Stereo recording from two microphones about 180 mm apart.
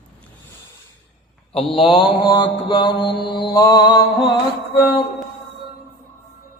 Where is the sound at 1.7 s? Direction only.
30° left (ahead or behind).